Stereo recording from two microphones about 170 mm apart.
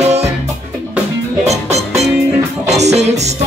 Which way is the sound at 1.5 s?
40° right (ahead or behind).